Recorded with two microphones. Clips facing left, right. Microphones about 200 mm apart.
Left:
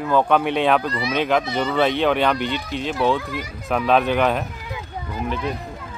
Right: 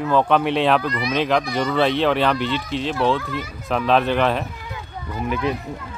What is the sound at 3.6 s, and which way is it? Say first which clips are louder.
Speech: even; 5° left (ahead or behind).